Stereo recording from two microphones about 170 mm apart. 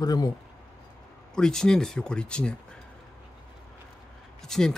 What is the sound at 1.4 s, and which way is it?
Speech, 5° left (ahead or behind).